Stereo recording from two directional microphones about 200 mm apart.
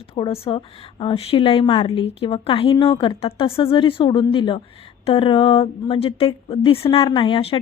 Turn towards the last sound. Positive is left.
turn(degrees=25)  # may be behind; listen again after turning